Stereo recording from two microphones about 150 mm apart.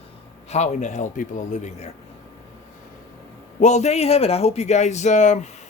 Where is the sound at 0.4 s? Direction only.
50° left (ahead or behind).